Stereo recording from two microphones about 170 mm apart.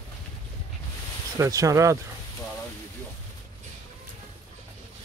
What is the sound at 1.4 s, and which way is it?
Speech, 20° right (ahead or behind).